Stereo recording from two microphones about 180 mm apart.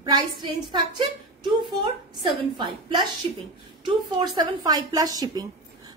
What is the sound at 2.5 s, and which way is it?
A woman's voice, 25° right (ahead or behind).